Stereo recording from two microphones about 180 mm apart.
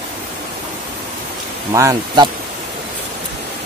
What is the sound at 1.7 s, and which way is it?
Speech, 15° right (ahead or behind).